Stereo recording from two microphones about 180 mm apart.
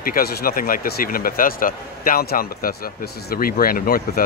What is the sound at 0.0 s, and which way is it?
Speech, 55° left (ahead or behind).